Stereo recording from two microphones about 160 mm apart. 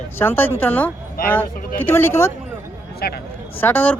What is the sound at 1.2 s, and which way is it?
Speech, 65° left (ahead or behind).